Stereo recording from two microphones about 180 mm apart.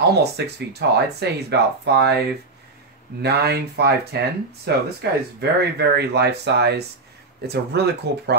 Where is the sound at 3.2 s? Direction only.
65° right (ahead or behind).